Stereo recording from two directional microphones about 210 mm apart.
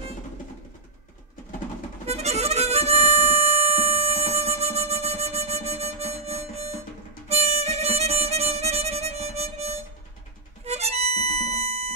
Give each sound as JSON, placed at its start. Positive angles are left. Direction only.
{"t": 2.0, "sound": "harmonica", "side_deg": -30}
{"t": 7.2, "sound": "music", "side_deg": -30}